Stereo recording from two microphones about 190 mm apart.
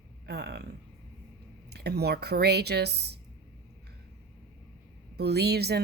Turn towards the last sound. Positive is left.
turn(degrees=-60)  # may be behind; listen again after turning